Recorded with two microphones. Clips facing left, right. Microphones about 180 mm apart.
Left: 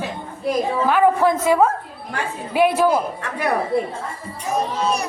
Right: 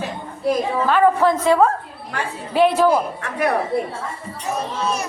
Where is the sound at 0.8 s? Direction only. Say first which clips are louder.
Right 1 dB; 10° left (ahead or behind).